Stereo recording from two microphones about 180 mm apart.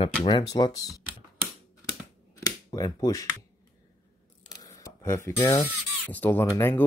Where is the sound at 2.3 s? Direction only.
20° left (ahead or behind).